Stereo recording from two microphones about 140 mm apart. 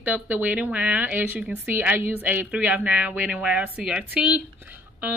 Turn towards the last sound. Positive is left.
turn(degrees=-10)  # may be behind; listen again after turning